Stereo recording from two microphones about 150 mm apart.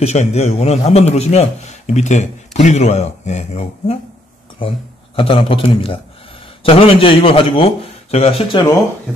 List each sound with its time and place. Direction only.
0.0 s a man's voice: 45° left (ahead or behind)